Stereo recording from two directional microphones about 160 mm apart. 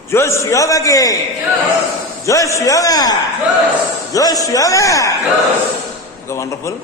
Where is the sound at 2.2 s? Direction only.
20° left (ahead or behind).